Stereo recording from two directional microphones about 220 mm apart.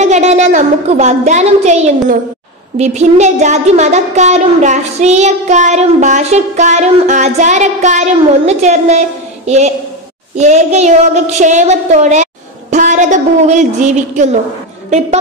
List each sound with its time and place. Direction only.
0.0 s speech: 30° right (ahead or behind)
10.3 s a woman's voice: 30° right (ahead or behind)